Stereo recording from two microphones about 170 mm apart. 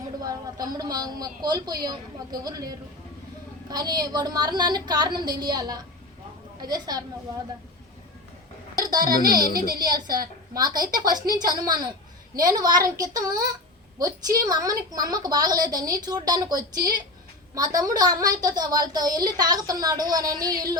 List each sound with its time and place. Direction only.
0.2 s a woman's voice: 20° right (ahead or behind)
8.7 s a woman's voice: 20° right (ahead or behind)